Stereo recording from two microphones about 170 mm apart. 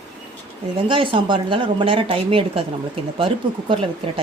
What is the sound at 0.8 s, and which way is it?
A woman's voice, 30° right (ahead or behind).